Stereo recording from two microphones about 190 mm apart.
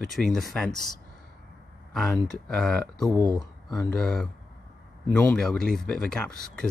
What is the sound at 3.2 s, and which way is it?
Speech, 20° right (ahead or behind).